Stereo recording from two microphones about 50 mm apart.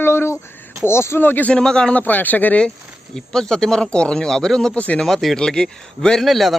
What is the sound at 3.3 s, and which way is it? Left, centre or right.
Speech, centre.